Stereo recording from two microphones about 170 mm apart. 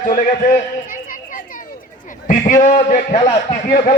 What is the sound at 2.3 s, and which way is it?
A man's voice, 45° left (ahead or behind).